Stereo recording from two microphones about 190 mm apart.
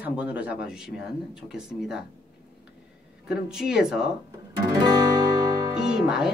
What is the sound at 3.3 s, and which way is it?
Speech, 5° right (ahead or behind).